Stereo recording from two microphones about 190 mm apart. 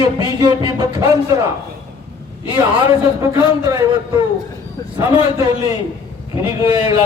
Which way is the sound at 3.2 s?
15° right (ahead or behind).